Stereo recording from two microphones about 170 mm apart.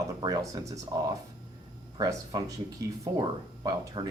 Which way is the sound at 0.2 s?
20° right (ahead or behind).